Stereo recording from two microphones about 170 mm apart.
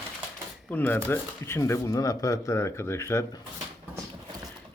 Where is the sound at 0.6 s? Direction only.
10° left (ahead or behind).